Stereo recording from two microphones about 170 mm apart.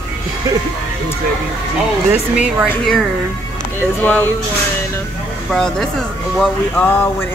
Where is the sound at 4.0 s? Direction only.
10° left (ahead or behind).